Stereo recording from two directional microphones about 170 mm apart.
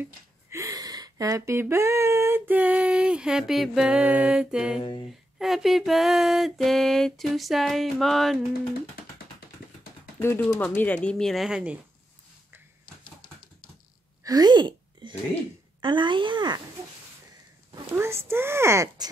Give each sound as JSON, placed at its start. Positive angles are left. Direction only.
{"t": 0.0, "sound": "speech", "side_deg": -15}
{"t": 4.7, "sound": "speech", "side_deg": 30}
{"t": 5.4, "sound": "a sound", "side_deg": 0}
{"t": 10.1, "sound": "speech", "side_deg": 10}
{"t": 10.6, "sound": "a sound", "side_deg": 10}
{"t": 14.2, "sound": "a woman's voice", "side_deg": -20}
{"t": 17.9, "sound": "speech", "side_deg": -15}